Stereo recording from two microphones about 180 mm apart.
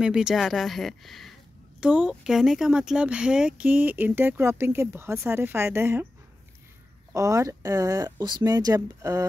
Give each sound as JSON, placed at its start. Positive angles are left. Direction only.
{"t": 0.0, "sound": "speech", "side_deg": -5}
{"t": 7.1, "sound": "speech", "side_deg": -15}